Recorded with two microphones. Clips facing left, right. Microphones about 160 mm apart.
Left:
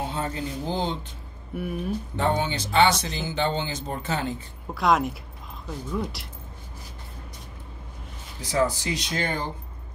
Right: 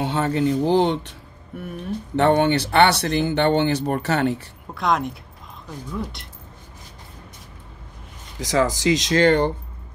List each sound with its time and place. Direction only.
0.0 s speech: 75° right (ahead or behind)
1.6 s speech: 5° left (ahead or behind)
2.1 s speech: 65° right (ahead or behind)
4.7 s speech: centre (ahead or behind)
8.4 s speech: 90° right